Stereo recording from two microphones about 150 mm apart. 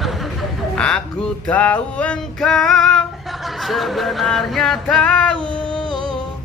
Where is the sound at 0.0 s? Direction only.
Centre (ahead or behind).